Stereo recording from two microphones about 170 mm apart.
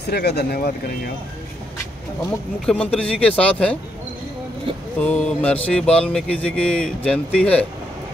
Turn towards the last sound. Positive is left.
turn(degrees=5)  # may be behind; listen again after turning